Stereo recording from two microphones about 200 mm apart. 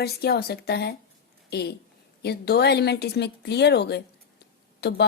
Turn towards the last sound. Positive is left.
turn(degrees=55)  # may be behind; listen again after turning